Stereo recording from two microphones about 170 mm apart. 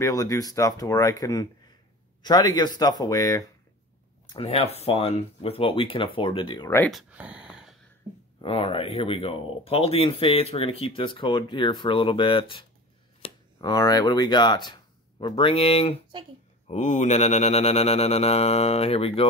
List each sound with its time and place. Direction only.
0.0 s speech: 20° left (ahead or behind)
4.3 s speech: 35° left (ahead or behind)
6.9 s speech: 5° right (ahead or behind)
8.4 s speech: 30° left (ahead or behind)
16.6 s speech: 45° left (ahead or behind)